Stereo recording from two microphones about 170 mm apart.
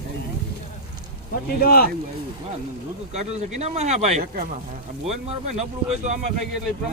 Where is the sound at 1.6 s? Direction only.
65° left (ahead or behind).